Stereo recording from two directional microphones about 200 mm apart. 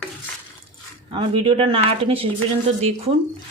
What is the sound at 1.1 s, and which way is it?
Speech, 25° right (ahead or behind).